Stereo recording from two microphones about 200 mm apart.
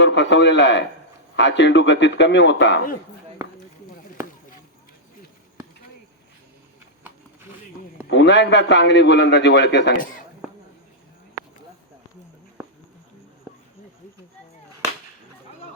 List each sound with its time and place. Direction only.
0.0 s a man's voice: 60° left (ahead or behind)
8.1 s a man's voice: 60° left (ahead or behind)